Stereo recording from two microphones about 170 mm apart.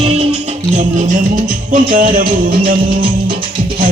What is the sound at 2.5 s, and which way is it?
Music, 30° right (ahead or behind).